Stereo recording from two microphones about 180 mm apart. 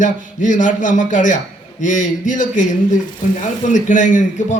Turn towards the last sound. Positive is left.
turn(degrees=45)  # may be behind; listen again after turning